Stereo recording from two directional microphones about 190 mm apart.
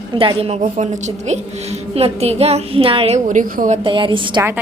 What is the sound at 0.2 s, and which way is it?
A woman's voice, 30° right (ahead or behind).